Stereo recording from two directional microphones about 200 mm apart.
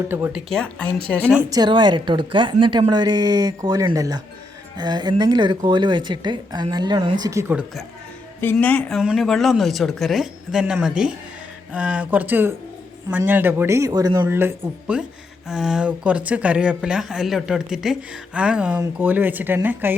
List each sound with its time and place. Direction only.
0.1 s speech: 10° right (ahead or behind)
0.5 s a woman's voice: 5° left (ahead or behind)
1.5 s a woman's voice: 20° right (ahead or behind)
8.4 s speech: 10° left (ahead or behind); by 20.0 s 10° right (ahead or behind)